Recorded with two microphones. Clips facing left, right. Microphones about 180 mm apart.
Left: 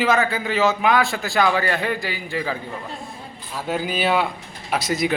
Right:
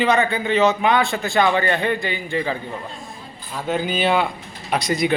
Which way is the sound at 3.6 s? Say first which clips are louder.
Right 2 dB; 5° left (ahead or behind).